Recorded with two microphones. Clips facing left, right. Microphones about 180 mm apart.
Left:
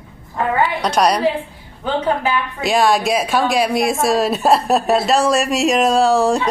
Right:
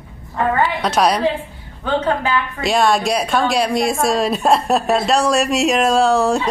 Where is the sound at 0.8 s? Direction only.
Centre (ahead or behind).